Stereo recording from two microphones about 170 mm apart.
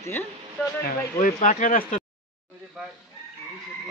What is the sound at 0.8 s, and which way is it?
Speech, 55° left (ahead or behind).